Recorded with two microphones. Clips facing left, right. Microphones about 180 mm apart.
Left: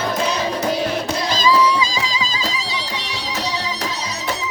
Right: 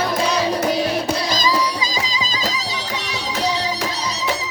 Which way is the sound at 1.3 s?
40° right (ahead or behind).